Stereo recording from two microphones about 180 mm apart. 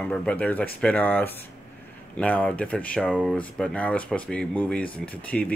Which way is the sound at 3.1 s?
5° right (ahead or behind).